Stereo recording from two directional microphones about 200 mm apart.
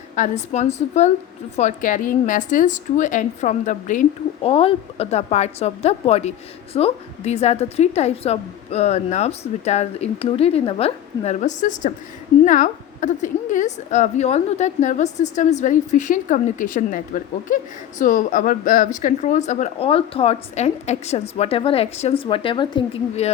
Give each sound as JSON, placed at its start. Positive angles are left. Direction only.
{"t": 0.2, "sound": "a woman's voice", "side_deg": 35}
{"t": 4.4, "sound": "a woman's voice", "side_deg": 30}